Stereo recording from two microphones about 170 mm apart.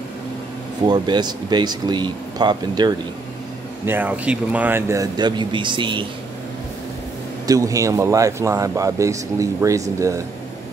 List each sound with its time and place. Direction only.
0.8 s speech: 25° right (ahead or behind)
3.8 s speech: 10° right (ahead or behind); by 6.0 s 30° right (ahead or behind)
7.4 s speech: 20° right (ahead or behind)